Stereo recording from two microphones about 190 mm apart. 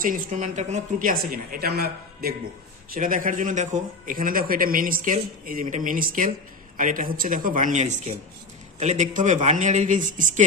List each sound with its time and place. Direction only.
0.0 s a man's voice: 45° right (ahead or behind)